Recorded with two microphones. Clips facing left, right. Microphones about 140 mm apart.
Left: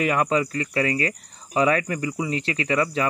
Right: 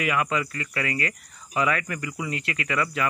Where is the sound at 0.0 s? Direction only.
40° left (ahead or behind).